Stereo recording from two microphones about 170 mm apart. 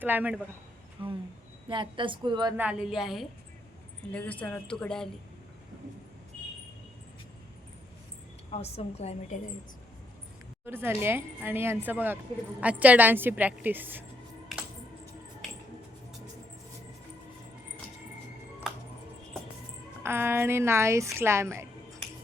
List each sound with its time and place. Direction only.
0.0 s speech: 10° right (ahead or behind)
1.0 s a woman's voice: 30° right (ahead or behind)
2.6 s a woman's voice: 5° right (ahead or behind)
4.1 s speech: 10° left (ahead or behind)
8.4 s a woman's voice: 35° left (ahead or behind)
10.7 s speech: 15° right (ahead or behind)
20.0 s speech: 15° right (ahead or behind)